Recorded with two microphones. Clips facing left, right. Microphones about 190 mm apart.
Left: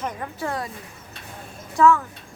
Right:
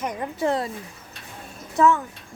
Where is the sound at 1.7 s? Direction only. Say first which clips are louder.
Left 2 dB; 20° right (ahead or behind).